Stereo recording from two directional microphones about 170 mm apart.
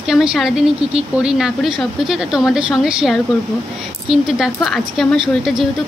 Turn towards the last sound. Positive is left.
turn(degrees=0)  # may be behind; listen again after turning